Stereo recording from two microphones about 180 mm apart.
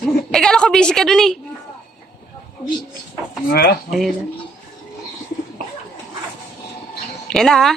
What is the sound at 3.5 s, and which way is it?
Speech, 55° left (ahead or behind).